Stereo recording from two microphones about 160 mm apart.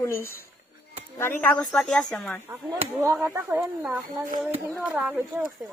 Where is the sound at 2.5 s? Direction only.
20° right (ahead or behind).